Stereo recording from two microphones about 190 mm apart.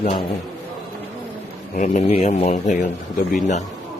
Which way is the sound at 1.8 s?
40° left (ahead or behind).